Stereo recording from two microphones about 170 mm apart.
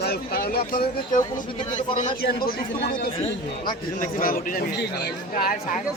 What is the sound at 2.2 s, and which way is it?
Speech, 60° left (ahead or behind).